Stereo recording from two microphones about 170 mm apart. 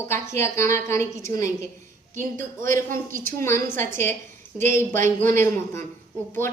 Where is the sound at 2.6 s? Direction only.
50° right (ahead or behind).